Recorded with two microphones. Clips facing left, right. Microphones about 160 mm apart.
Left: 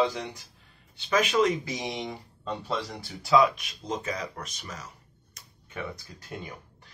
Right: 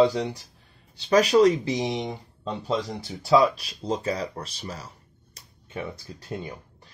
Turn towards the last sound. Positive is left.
turn(degrees=-30)  # may be behind; listen again after turning